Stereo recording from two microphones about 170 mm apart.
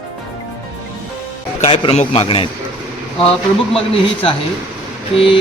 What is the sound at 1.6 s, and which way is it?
Speech, 35° left (ahead or behind).